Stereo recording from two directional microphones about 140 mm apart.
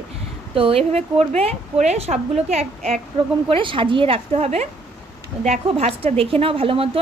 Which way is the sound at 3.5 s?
35° right (ahead or behind).